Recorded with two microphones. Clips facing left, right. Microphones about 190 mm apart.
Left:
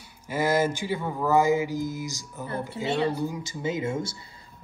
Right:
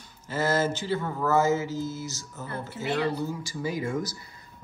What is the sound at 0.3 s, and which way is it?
Speech, 15° left (ahead or behind).